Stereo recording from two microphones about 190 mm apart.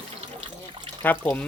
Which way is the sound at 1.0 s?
10° left (ahead or behind).